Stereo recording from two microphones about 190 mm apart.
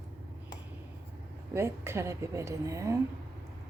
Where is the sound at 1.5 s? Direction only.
15° right (ahead or behind).